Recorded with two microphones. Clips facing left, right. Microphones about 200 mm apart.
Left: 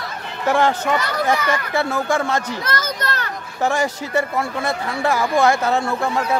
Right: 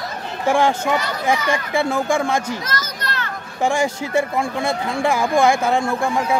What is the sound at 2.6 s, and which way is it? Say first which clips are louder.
Children playing: left 3 dB; 50° left (ahead or behind).